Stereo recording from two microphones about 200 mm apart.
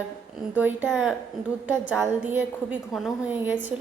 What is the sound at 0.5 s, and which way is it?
A woman's voice, 10° right (ahead or behind).